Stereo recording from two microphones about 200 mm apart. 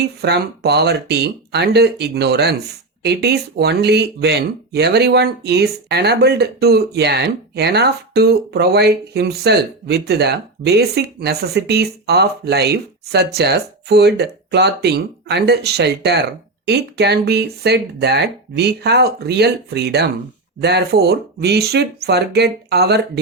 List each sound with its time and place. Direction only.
0.0 s speech: 55° right (ahead or behind)